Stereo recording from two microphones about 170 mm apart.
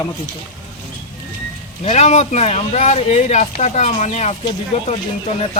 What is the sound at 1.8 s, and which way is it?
Speech, 45° left (ahead or behind).